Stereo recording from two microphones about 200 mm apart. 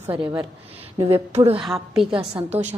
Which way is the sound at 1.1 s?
30° right (ahead or behind).